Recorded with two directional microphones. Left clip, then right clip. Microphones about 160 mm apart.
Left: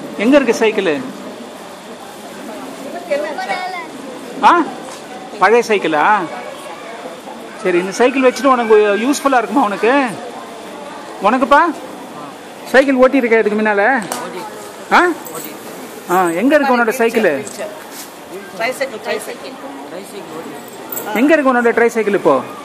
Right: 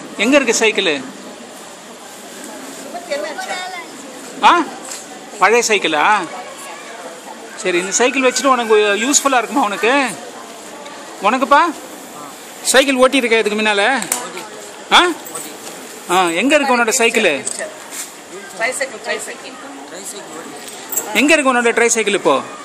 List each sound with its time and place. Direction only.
0.2 s speech: 20° right (ahead or behind)
4.4 s speech: 20° right (ahead or behind)
7.6 s speech: 15° right (ahead or behind)
11.2 s speech: 20° right (ahead or behind)
12.7 s speech: 25° right (ahead or behind)
18.6 s speech: 25° right (ahead or behind)
21.1 s speech: 20° right (ahead or behind)